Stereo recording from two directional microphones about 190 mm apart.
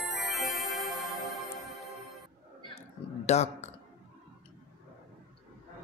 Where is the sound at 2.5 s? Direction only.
30° left (ahead or behind).